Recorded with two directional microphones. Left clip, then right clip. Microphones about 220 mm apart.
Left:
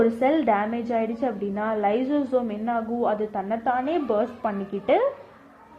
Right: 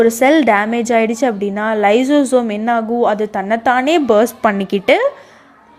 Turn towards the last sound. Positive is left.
turn(degrees=-40)  # may be behind; listen again after turning